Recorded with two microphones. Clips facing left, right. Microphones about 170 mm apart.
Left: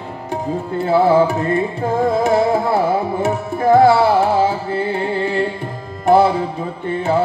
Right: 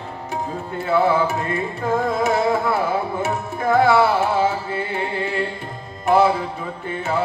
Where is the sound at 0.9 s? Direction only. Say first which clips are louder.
Left 5 dB; 30° left (ahead or behind).